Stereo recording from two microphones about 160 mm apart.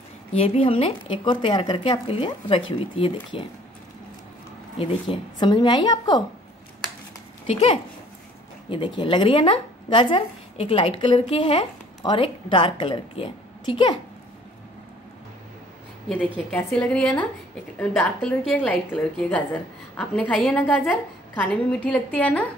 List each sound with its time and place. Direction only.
0.3 s speech: 35° left (ahead or behind)
4.7 s a woman's voice: 35° left (ahead or behind)
7.4 s speech: 35° left (ahead or behind)
16.4 s a woman's voice: 10° left (ahead or behind)